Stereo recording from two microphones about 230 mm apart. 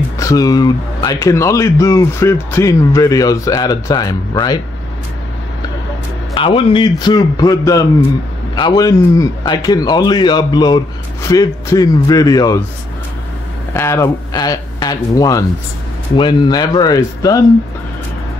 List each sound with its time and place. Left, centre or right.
0.2 s speech: centre
6.3 s a man's voice: left
13.7 s speech: centre